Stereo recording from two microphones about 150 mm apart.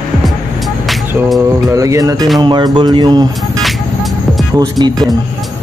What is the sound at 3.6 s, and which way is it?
Music, centre (ahead or behind).